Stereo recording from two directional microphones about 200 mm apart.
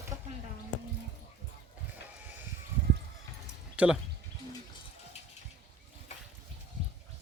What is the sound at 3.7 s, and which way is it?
Speech, 5° right (ahead or behind).